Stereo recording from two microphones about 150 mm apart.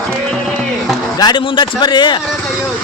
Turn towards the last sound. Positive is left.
turn(degrees=30)  # may be behind; listen again after turning